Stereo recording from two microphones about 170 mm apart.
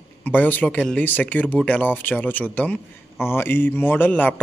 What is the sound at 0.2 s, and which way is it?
Speech, 10° left (ahead or behind).